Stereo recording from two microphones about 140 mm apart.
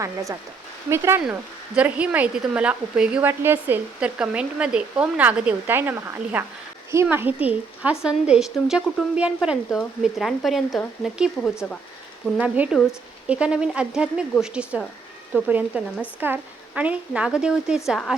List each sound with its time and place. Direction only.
0.0 s speech: 25° right (ahead or behind); by 11.8 s 10° left (ahead or behind)
12.4 s speech: 10° right (ahead or behind)